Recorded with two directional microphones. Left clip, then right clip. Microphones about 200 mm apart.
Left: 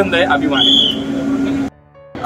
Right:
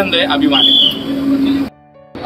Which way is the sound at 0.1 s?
20° left (ahead or behind).